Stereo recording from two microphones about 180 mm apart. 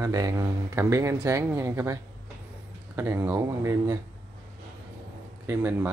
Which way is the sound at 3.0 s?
10° right (ahead or behind).